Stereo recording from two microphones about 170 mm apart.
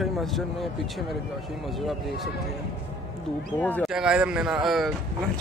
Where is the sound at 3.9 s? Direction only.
5° right (ahead or behind).